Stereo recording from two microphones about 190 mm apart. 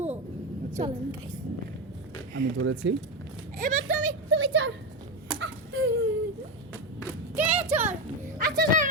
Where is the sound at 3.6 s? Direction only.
45° right (ahead or behind).